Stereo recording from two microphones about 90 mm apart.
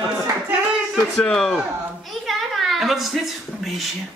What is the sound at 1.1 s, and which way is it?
Speech, 5° left (ahead or behind).